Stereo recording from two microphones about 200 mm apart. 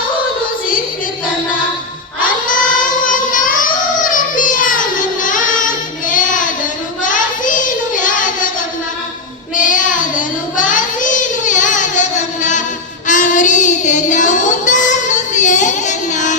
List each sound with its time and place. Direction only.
3.0 s child singing: 40° left (ahead or behind)
9.6 s child singing: 40° left (ahead or behind)